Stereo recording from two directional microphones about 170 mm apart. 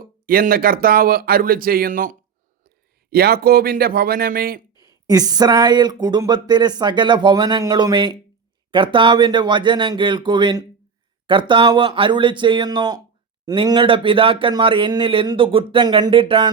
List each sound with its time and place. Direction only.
0.0 s speech: 60° right (ahead or behind)
3.1 s speech: 65° right (ahead or behind)
4.8 s speech: 20° right (ahead or behind)